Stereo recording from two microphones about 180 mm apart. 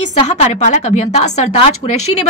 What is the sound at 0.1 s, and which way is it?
A woman's voice, 40° left (ahead or behind).